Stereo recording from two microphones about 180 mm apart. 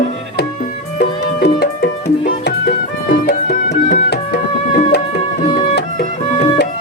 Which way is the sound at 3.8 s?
55° left (ahead or behind).